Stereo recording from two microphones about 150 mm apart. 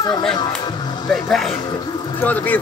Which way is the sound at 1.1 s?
5° left (ahead or behind).